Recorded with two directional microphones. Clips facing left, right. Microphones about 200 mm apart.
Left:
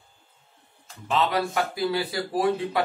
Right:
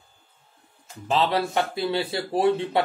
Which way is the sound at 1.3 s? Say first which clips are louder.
Right 2 dB; 25° right (ahead or behind).